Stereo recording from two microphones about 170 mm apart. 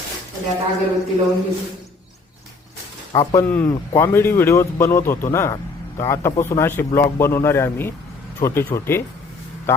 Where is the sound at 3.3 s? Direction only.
15° left (ahead or behind).